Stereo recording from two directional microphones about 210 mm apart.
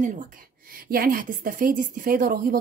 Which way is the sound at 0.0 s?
40° right (ahead or behind).